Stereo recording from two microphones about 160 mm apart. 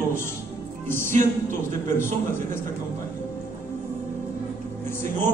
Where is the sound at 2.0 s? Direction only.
15° left (ahead or behind).